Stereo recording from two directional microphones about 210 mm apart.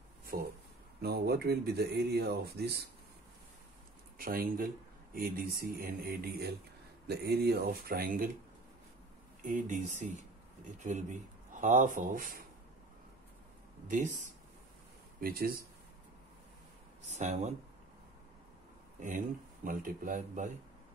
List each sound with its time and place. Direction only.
0.3 s speech: 45° right (ahead or behind)
4.2 s speech: 45° right (ahead or behind)
9.4 s speech: 35° right (ahead or behind)
13.8 s speech: 35° right (ahead or behind)
15.1 s speech: 45° right (ahead or behind)
17.1 s speech: 35° right (ahead or behind)
18.9 s speech: 40° right (ahead or behind)